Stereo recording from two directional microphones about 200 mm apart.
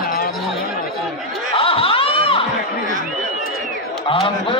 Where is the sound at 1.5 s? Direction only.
30° left (ahead or behind).